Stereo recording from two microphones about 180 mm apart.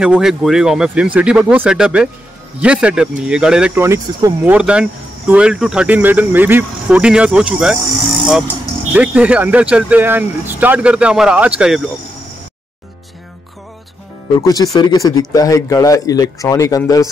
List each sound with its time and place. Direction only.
0.0 s speech: 5° right (ahead or behind)
8.9 s speech: 5° right (ahead or behind)
14.4 s speech: 20° left (ahead or behind)